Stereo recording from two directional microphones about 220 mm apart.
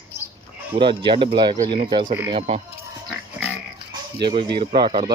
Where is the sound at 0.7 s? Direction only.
20° right (ahead or behind).